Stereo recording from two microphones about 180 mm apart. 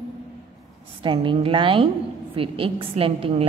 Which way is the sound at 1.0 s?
30° right (ahead or behind).